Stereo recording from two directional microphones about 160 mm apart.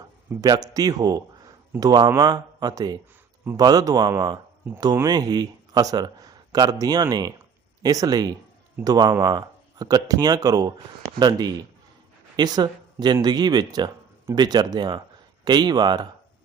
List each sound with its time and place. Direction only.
0.4 s speech: 25° right (ahead or behind)